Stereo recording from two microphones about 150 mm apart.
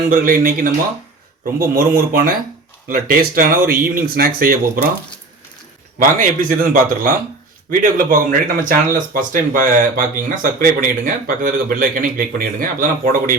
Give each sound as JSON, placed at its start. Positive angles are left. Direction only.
{"t": 0.1, "sound": "speech", "side_deg": -70}
{"t": 6.0, "sound": "speech", "side_deg": -65}